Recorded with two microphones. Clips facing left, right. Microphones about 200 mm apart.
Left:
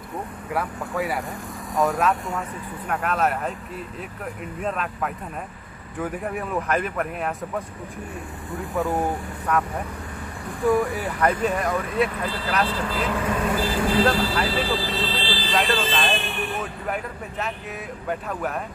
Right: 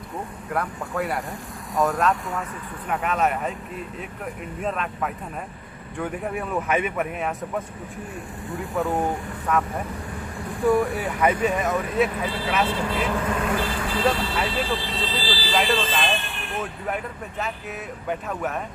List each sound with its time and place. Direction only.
0.5 s speech: centre (ahead or behind)
4.6 s speech: centre (ahead or behind)
13.7 s speech: 25° left (ahead or behind)
14.0 s speech: centre (ahead or behind)